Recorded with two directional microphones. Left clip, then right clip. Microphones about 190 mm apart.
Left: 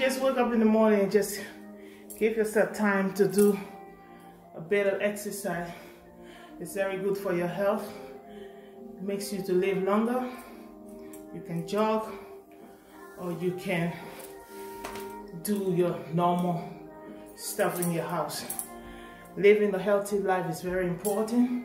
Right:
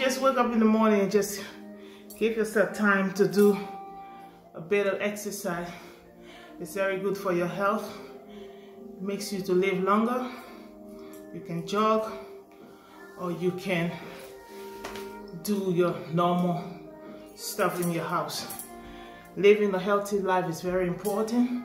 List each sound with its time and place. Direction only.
0.0 s speech: 15° right (ahead or behind)
4.6 s speech: 15° right (ahead or behind)
6.7 s speech: 15° right (ahead or behind)
9.0 s speech: 15° right (ahead or behind)
11.4 s speech: 15° right (ahead or behind)
13.2 s speech: 15° right (ahead or behind)
15.4 s speech: 20° right (ahead or behind)
17.4 s speech: 15° right (ahead or behind)